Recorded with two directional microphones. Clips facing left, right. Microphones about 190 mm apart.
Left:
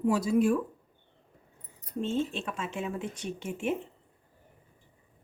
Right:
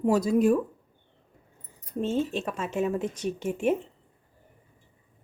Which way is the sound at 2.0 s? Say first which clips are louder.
Right 3 dB; 40° right (ahead or behind).